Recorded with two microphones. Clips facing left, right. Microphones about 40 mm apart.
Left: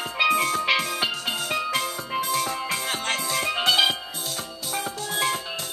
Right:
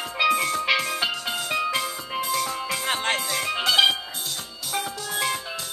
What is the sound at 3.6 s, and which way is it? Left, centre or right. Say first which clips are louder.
Music: right 2 dB; left.